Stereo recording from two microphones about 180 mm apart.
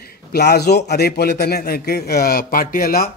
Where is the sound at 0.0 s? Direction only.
60° left (ahead or behind).